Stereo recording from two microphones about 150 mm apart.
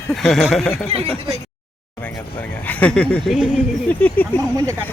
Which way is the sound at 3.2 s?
5° right (ahead or behind).